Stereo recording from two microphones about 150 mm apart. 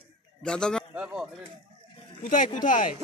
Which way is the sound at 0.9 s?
5° right (ahead or behind).